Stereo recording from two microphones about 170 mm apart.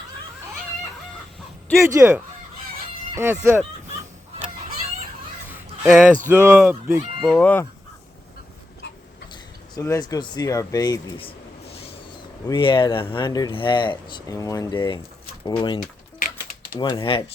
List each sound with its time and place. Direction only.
1.8 s speech: 15° right (ahead or behind)
5.5 s honk: 5° right (ahead or behind)
6.2 s speech: 15° right (ahead or behind)
7.2 s speech: 5° left (ahead or behind)
9.8 s speech: 20° left (ahead or behind)
16.9 s speech: 30° left (ahead or behind)